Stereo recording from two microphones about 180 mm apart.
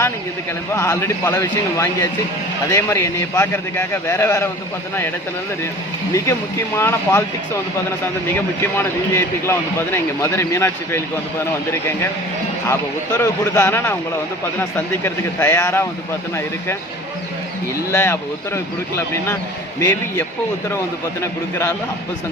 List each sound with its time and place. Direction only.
0.7 s speech: 15° left (ahead or behind)
6.7 s speech: 15° left (ahead or behind)
8.6 s speech: 15° left (ahead or behind)
13.1 s speech: 20° left (ahead or behind)
17.9 s speech: 15° left (ahead or behind)